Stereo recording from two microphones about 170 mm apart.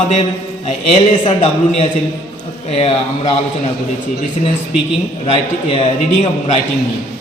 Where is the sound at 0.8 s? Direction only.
30° left (ahead or behind).